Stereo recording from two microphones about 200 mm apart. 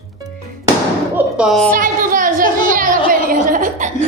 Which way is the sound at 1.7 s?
40° right (ahead or behind).